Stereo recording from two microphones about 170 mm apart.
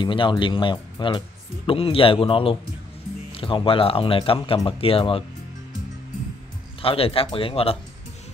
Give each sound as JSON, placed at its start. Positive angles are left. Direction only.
{"t": 0.0, "sound": "speech", "side_deg": 30}
{"t": 6.8, "sound": "speech", "side_deg": 35}